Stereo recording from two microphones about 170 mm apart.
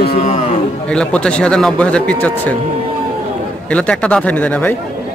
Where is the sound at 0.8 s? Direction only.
5° left (ahead or behind).